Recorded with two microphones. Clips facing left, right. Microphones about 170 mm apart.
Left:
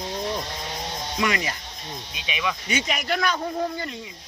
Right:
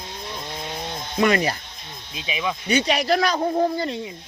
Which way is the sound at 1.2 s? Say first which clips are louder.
Right 7 dB; 35° right (ahead or behind).